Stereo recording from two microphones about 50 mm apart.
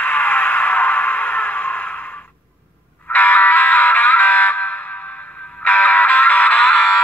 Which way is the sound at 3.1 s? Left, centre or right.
Left.